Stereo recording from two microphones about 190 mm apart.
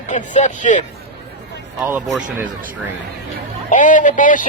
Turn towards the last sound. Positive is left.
turn(degrees=45)  # may be behind; listen again after turning